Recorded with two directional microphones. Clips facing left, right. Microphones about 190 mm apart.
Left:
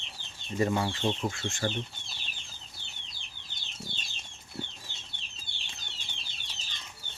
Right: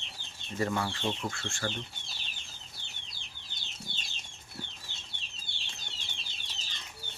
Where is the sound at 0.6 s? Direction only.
15° left (ahead or behind).